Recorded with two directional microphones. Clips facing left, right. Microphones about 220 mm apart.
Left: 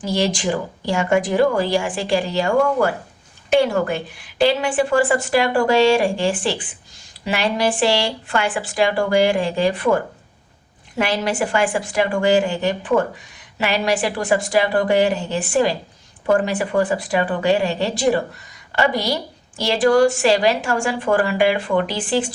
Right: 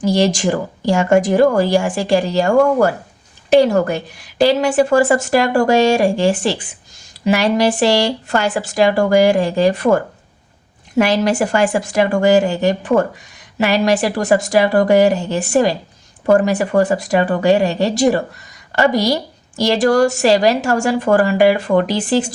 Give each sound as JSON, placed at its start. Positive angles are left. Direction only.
{"t": 0.0, "sound": "a woman's voice", "side_deg": -45}